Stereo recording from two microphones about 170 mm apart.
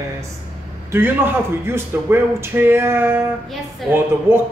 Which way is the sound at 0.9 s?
15° right (ahead or behind).